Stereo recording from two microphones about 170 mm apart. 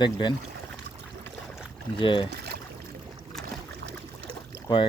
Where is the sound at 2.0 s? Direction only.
30° left (ahead or behind).